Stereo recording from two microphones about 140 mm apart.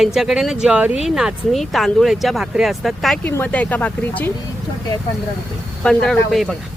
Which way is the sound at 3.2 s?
10° left (ahead or behind).